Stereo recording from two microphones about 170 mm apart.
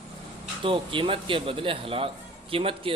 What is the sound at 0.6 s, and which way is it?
A man's voice, 30° right (ahead or behind).